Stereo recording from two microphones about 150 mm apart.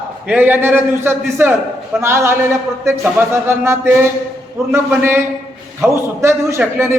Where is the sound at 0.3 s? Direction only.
10° right (ahead or behind).